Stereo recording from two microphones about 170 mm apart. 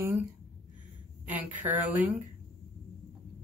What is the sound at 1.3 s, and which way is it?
Speech, 10° right (ahead or behind).